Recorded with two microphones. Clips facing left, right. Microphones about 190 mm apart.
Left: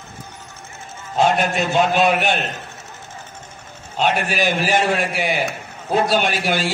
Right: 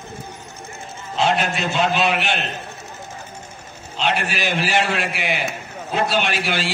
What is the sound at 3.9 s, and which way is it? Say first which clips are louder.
A man's voice: left 3 dB; 45° left (ahead or behind).